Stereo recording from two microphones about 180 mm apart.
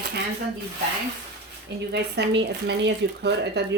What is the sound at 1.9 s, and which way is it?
Speech, 70° right (ahead or behind).